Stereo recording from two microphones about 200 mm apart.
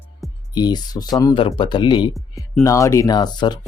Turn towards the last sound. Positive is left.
turn(degrees=20)  # may be behind; listen again after turning